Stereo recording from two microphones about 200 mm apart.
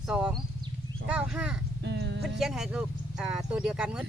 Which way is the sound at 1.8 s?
60° right (ahead or behind).